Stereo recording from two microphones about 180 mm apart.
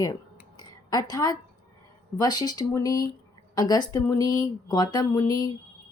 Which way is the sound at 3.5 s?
20° left (ahead or behind).